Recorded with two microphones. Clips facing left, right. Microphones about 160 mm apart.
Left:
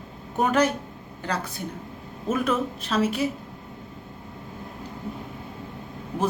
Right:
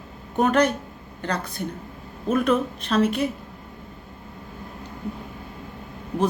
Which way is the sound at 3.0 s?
55° right (ahead or behind).